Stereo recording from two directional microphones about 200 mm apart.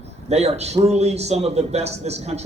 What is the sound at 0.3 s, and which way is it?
A man's voice, 35° right (ahead or behind).